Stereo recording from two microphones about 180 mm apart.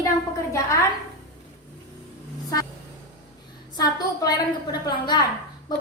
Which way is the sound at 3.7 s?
25° left (ahead or behind).